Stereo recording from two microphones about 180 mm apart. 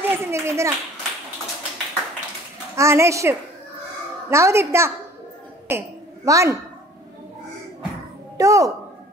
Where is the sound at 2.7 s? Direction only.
15° right (ahead or behind).